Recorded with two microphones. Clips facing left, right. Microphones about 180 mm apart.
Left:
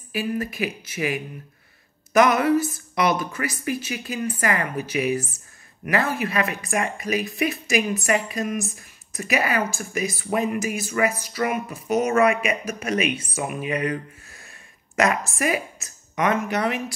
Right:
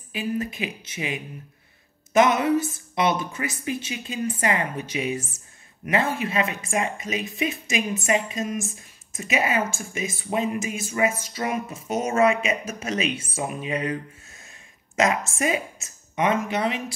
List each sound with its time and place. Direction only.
0.1 s speech: 20° right (ahead or behind)